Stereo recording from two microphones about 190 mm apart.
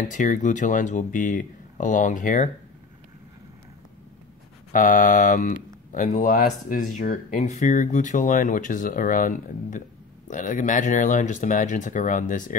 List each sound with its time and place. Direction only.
0.1 s speech: 40° left (ahead or behind)
4.7 s speech: 45° left (ahead or behind)